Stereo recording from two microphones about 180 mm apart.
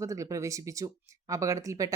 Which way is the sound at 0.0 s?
20° right (ahead or behind).